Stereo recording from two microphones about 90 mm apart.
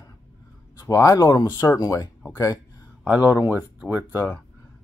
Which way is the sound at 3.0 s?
20° right (ahead or behind).